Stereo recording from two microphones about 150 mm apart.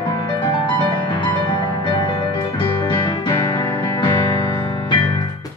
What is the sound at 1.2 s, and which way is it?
Music, 30° left (ahead or behind).